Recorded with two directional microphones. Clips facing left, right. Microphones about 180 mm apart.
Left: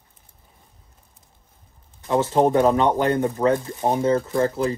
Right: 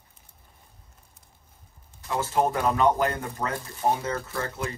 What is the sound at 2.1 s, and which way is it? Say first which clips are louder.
Speech: left 7 dB; 30° left (ahead or behind).